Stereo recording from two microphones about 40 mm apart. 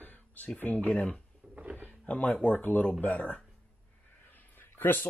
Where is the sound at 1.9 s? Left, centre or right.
Left.